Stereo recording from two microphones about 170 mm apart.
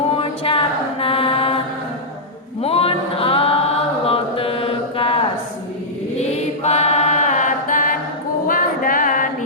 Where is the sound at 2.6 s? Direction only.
35° left (ahead or behind).